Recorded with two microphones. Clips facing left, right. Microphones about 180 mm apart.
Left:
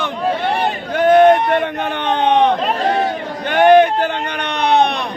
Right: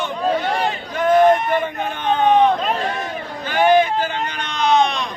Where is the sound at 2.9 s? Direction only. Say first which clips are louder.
Left 8 dB; 35° left (ahead or behind).